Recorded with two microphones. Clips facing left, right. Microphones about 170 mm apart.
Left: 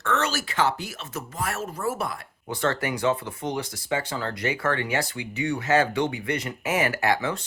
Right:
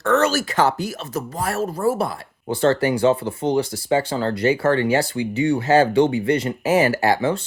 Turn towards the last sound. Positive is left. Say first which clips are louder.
# right 6 dB
turn(degrees=-30)  # may be behind; listen again after turning